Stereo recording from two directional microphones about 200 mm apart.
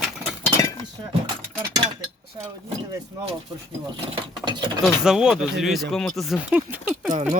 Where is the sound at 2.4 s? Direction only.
20° right (ahead or behind).